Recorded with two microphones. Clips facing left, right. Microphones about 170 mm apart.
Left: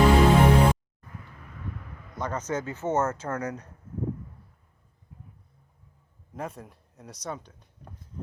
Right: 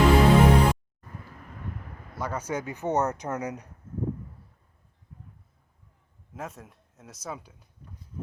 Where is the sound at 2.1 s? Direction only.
10° right (ahead or behind).